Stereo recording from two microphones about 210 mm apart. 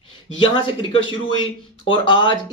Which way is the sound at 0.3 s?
25° left (ahead or behind).